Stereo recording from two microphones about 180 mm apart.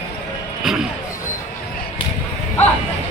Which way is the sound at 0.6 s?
Centre (ahead or behind).